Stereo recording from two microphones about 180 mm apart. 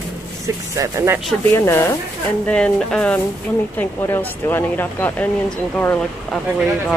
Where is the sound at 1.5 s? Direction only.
15° left (ahead or behind).